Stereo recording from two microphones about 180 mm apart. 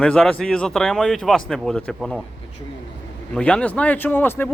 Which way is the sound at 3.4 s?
5° left (ahead or behind).